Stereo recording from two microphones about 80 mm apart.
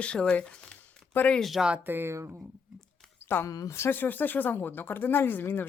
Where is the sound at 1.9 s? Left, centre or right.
Right.